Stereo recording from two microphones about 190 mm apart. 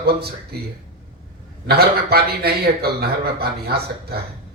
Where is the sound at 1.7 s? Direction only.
55° right (ahead or behind).